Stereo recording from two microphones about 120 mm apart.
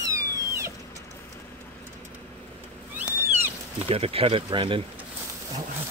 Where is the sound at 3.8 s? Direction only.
55° right (ahead or behind).